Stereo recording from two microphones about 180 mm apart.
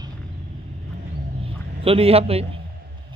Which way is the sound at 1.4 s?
30° right (ahead or behind).